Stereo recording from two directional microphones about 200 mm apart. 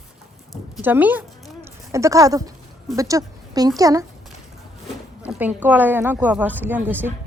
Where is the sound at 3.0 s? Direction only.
15° right (ahead or behind).